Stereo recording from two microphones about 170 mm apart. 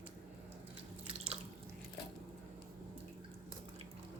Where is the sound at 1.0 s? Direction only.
35° right (ahead or behind).